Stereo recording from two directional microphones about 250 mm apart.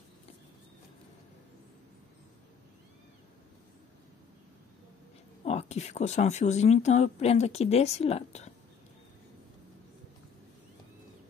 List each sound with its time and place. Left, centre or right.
5.4 s speech: left